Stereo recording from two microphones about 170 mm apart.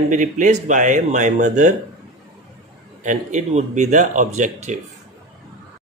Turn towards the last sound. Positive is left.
turn(degrees=-45)  # may be behind; listen again after turning